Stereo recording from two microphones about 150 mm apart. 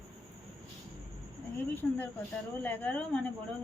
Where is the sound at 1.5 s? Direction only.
10° left (ahead or behind).